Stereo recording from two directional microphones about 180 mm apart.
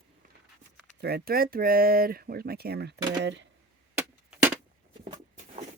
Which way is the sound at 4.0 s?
10° right (ahead or behind).